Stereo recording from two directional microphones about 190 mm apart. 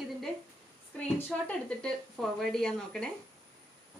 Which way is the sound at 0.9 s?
10° left (ahead or behind).